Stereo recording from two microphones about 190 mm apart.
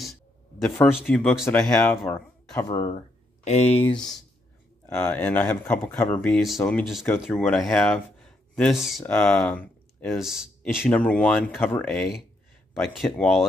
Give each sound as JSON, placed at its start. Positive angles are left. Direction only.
{"t": 0.7, "sound": "speech", "side_deg": 5}
{"t": 2.7, "sound": "speech", "side_deg": 25}
{"t": 3.4, "sound": "speech", "side_deg": 35}
{"t": 3.9, "sound": "speech", "side_deg": 5}
{"t": 10.2, "sound": "speech", "side_deg": 0}